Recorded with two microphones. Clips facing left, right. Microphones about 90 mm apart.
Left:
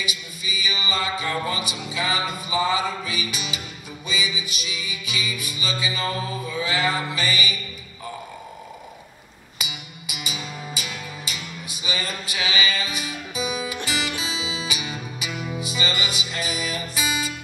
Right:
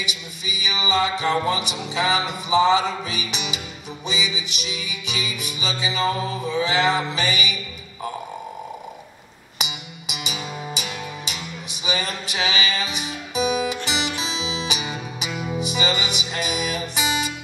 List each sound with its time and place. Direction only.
0.7 s music: 20° right (ahead or behind)
10.2 s music: 20° right (ahead or behind)